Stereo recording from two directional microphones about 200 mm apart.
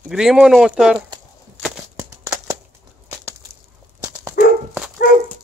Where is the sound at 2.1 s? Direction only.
15° right (ahead or behind).